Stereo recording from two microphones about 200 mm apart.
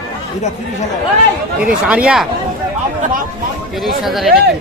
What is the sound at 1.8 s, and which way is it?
Speech, 5° right (ahead or behind).